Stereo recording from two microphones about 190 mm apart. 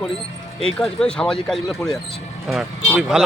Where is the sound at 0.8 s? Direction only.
5° left (ahead or behind).